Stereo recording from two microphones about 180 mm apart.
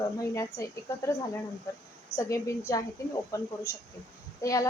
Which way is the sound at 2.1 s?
15° left (ahead or behind).